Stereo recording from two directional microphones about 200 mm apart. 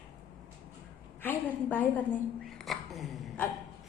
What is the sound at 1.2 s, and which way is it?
Speech, 10° left (ahead or behind).